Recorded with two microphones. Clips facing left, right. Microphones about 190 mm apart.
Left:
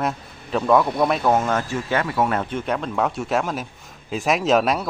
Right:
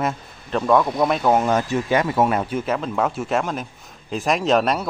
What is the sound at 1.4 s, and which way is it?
Speech, 15° right (ahead or behind).